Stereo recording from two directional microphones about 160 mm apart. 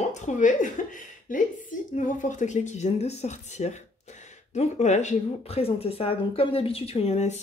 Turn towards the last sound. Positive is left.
turn(degrees=45)  # may be behind; listen again after turning